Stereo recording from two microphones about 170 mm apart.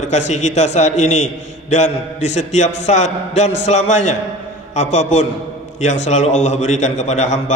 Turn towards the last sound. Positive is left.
turn(degrees=45)  # may be behind; listen again after turning